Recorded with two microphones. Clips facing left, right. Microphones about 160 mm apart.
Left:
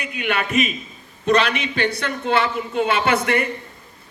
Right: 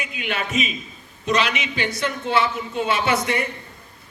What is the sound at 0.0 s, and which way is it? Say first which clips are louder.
Speech: left 4 dB; 55° left (ahead or behind).